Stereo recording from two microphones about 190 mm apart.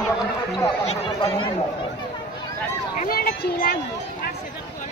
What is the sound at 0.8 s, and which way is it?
Speech, 30° left (ahead or behind).